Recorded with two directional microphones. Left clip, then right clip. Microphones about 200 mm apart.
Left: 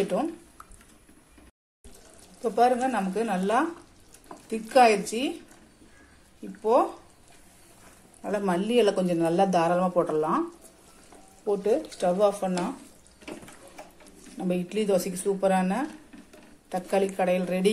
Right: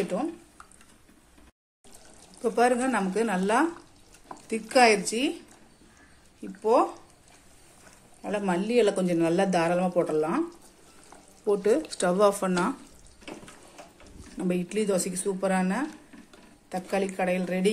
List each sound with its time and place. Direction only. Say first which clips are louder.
2.4 s a man's voice: left 1 dB; 20° right (ahead or behind)
6.6 s a man's voice: even; 5° right (ahead or behind)
8.2 s a man's voice: left 1 dB; centre (ahead or behind)
11.4 s speech: right 1 dB; 20° right (ahead or behind)
14.3 s a man's voice: even; 10° right (ahead or behind)